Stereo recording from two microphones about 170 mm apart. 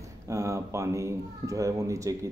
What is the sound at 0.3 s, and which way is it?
Speech, 15° right (ahead or behind).